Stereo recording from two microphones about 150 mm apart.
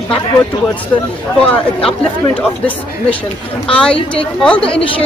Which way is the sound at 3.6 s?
5° left (ahead or behind).